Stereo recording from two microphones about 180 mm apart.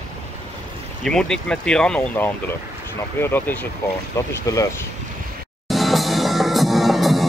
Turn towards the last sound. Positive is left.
turn(degrees=0)  # may be behind; listen again after turning